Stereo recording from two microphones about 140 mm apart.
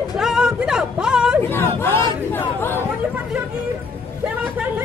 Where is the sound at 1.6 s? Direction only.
15° left (ahead or behind).